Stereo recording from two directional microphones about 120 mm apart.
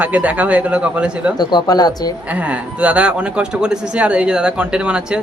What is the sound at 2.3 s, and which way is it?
Speech, 10° right (ahead or behind).